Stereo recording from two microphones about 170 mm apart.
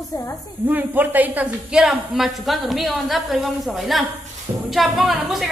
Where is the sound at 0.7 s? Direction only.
10° right (ahead or behind).